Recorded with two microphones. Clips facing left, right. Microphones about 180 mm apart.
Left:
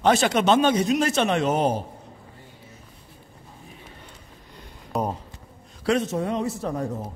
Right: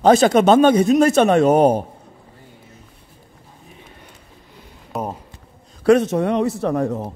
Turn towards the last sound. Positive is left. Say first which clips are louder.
# right 8 dB
turn(degrees=-70)  # may be behind; listen again after turning